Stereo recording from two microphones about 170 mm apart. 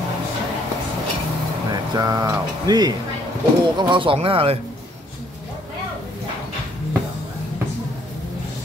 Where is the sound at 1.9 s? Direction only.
20° right (ahead or behind).